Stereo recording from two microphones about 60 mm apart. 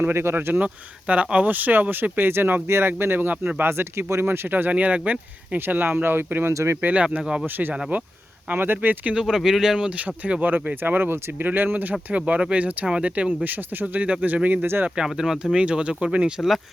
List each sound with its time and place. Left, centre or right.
0.0 s speech: right
0.6 s speech: right
5.5 s speech: right
6.5 s speech: right
6.8 s speech: right
8.5 s speech: right
9.1 s speech: centre
10.0 s speech: right
14.8 s speech: centre